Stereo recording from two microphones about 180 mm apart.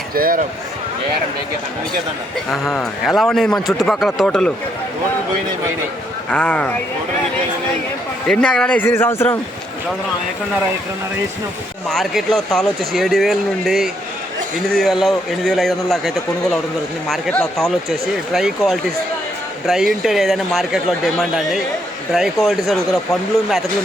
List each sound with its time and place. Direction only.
0.1 s speech: 55° right (ahead or behind)
2.5 s speech: centre (ahead or behind)
6.3 s a man's voice: 5° left (ahead or behind)
8.3 s a man's voice: 5° left (ahead or behind)
11.9 s speech: centre (ahead or behind)